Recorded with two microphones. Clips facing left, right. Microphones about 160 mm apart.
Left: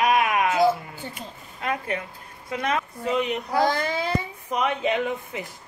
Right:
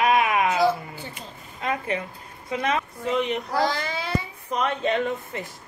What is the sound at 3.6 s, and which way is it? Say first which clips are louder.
Babbling: left 3 dB; 50° left (ahead or behind).